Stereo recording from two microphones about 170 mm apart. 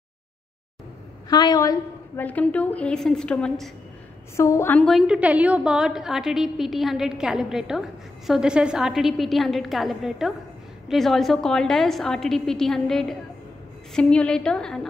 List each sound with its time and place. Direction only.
1.3 s a woman's voice: 20° left (ahead or behind)
2.2 s a woman's voice: 10° left (ahead or behind)
4.4 s a woman's voice: 15° left (ahead or behind)